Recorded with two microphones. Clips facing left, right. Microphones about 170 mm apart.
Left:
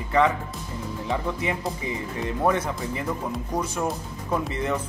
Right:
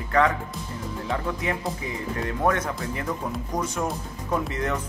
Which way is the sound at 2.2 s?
5° left (ahead or behind).